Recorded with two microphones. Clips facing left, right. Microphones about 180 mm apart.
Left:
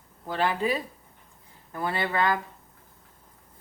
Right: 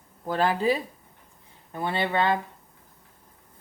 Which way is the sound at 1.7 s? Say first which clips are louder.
Right 2 dB; 25° right (ahead or behind).